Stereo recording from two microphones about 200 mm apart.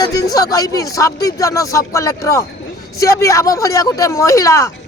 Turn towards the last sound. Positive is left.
turn(degrees=15)  # may be behind; listen again after turning